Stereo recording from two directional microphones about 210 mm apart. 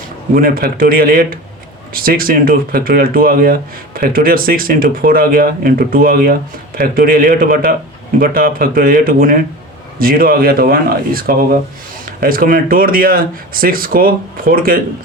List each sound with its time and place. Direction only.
0.3 s speech: 45° right (ahead or behind)